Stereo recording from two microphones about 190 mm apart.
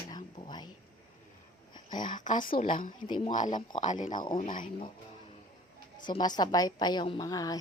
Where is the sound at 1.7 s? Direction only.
25° left (ahead or behind).